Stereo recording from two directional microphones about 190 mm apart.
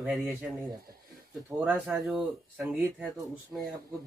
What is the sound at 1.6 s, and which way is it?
Speech, 10° right (ahead or behind).